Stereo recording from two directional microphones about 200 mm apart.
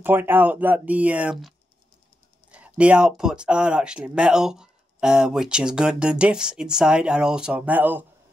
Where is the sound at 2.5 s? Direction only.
5° right (ahead or behind).